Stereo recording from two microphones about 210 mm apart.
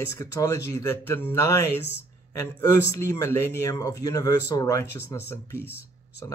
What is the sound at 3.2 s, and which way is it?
Speech, 10° left (ahead or behind).